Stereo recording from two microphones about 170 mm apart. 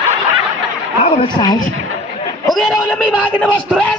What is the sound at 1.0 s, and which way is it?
Speech, 30° left (ahead or behind).